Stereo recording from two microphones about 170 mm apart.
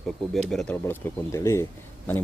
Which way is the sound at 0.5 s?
10° left (ahead or behind).